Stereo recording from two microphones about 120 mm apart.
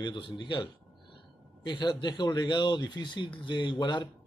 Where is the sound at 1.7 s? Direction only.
40° left (ahead or behind).